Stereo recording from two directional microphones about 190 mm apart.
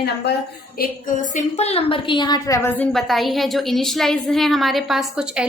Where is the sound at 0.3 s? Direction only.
60° left (ahead or behind).